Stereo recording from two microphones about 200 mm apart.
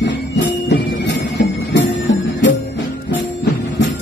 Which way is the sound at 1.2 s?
60° left (ahead or behind).